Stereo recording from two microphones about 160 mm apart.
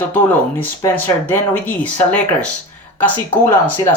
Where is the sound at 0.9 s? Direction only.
10° left (ahead or behind).